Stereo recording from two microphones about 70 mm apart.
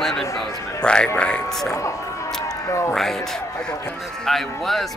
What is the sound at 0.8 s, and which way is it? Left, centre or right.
Speech, centre.